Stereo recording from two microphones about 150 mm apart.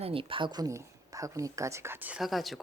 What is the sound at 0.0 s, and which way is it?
Speech, 35° right (ahead or behind).